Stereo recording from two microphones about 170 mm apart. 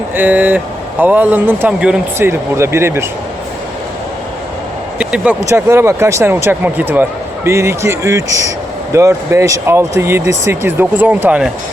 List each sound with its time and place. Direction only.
0.2 s speech: 10° right (ahead or behind)
4.9 s speech: 5° right (ahead or behind)